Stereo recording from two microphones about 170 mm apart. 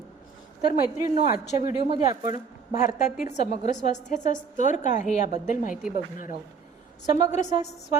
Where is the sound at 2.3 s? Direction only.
45° left (ahead or behind).